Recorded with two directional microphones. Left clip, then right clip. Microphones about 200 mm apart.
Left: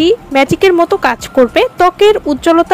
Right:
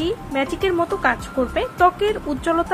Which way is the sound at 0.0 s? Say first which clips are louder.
Left 13 dB; 45° left (ahead or behind).